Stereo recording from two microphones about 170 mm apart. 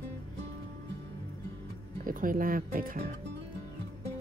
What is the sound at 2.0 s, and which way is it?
Speech, 55° right (ahead or behind).